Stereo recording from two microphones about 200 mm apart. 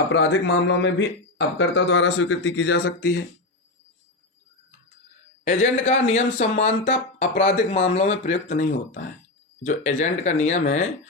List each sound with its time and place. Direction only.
0.1 s speech: 65° left (ahead or behind)
5.5 s speech: 35° left (ahead or behind)